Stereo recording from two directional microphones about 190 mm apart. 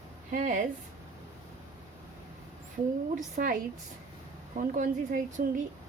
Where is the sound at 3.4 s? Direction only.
45° right (ahead or behind).